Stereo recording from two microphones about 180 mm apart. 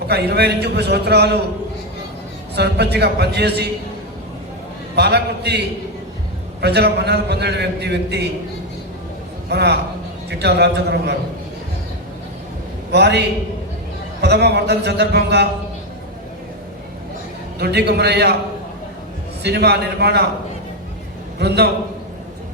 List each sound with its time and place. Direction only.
0.1 s a man's voice: 65° right (ahead or behind)
2.6 s a man's voice: 65° right (ahead or behind)
4.9 s a man's voice: 65° right (ahead or behind)
9.5 s a man's voice: 65° right (ahead or behind)
12.9 s a man's voice: 65° right (ahead or behind)
17.6 s a man's voice: 65° right (ahead or behind)
19.4 s a man's voice: 65° right (ahead or behind)
21.3 s a man's voice: 65° right (ahead or behind)